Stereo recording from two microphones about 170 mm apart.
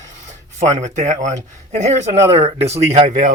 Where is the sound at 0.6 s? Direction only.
45° right (ahead or behind).